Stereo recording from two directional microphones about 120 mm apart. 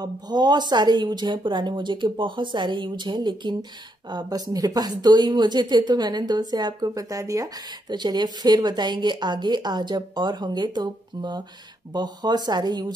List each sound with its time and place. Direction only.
0.0 s a woman's voice: 35° right (ahead or behind)